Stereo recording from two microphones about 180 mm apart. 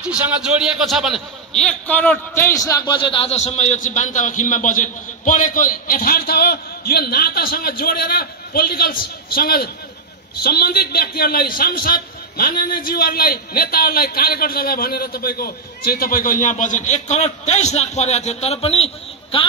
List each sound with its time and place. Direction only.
0.0 s a man's voice: 5° right (ahead or behind); by 18.9 s 35° left (ahead or behind)